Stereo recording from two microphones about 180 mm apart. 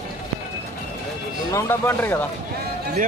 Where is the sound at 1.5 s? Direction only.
15° left (ahead or behind).